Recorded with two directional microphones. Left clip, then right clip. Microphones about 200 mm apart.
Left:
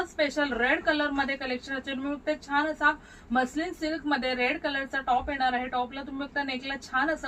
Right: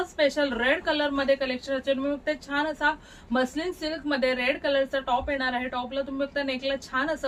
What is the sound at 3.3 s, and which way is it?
A woman's voice, 25° right (ahead or behind).